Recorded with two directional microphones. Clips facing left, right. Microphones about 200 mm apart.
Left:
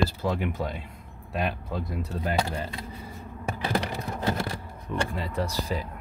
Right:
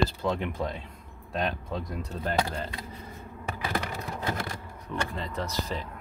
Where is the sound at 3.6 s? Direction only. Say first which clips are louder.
Left 4 dB; 30° left (ahead or behind).